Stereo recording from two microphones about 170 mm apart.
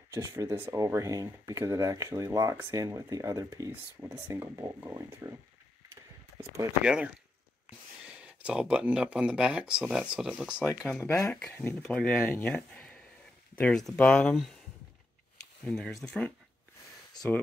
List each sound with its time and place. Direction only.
0.1 s speech: 20° right (ahead or behind)
6.8 s speech: 5° right (ahead or behind)
11.0 s speech: 15° left (ahead or behind)
15.6 s speech: 5° left (ahead or behind)